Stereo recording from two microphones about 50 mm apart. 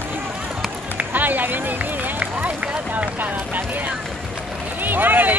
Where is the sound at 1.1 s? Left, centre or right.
Right.